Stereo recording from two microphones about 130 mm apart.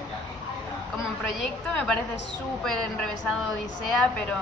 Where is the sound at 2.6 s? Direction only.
5° left (ahead or behind).